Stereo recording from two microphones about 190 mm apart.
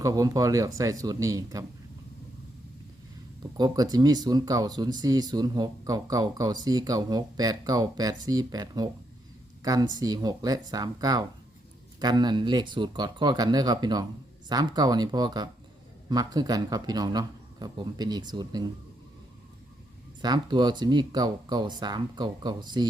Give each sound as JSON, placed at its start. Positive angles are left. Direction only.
{"t": 0.0, "sound": "speech", "side_deg": -20}
{"t": 3.6, "sound": "speech", "side_deg": -20}
{"t": 20.2, "sound": "speech", "side_deg": -25}